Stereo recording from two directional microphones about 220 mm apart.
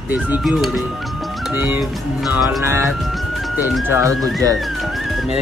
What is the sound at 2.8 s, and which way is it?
Music, centre (ahead or behind).